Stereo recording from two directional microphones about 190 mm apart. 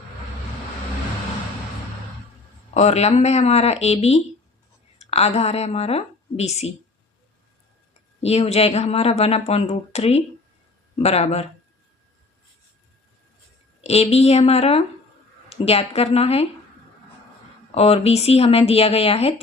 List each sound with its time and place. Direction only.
2.7 s a woman's voice: 35° left (ahead or behind)
8.2 s speech: 30° left (ahead or behind)
13.8 s speech: 30° left (ahead or behind)
17.7 s speech: 30° left (ahead or behind)